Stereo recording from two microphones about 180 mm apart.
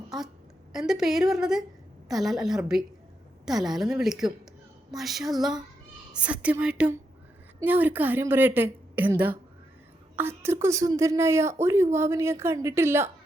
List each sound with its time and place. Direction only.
0.7 s a woman's voice: 5° right (ahead or behind)